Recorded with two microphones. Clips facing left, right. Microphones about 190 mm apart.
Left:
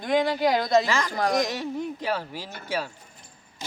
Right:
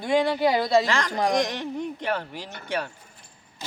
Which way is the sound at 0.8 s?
5° left (ahead or behind).